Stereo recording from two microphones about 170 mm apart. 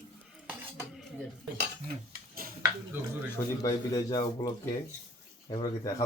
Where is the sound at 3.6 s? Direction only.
20° left (ahead or behind).